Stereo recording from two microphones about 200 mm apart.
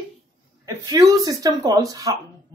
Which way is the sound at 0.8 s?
20° right (ahead or behind).